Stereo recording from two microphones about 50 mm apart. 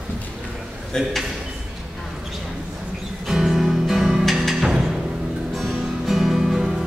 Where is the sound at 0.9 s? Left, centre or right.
Centre.